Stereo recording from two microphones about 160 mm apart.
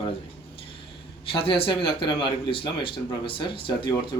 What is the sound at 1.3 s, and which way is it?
Speech, 35° left (ahead or behind).